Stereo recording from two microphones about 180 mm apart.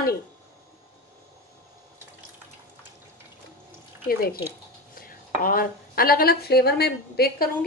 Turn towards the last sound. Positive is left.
turn(degrees=60)  # may be behind; listen again after turning